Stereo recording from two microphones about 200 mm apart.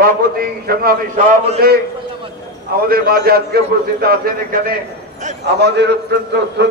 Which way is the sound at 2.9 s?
50° right (ahead or behind).